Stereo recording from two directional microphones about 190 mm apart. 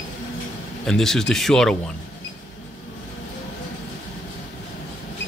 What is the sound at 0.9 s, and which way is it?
Speech, centre (ahead or behind).